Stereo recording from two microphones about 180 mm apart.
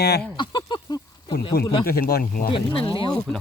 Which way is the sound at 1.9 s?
60° left (ahead or behind).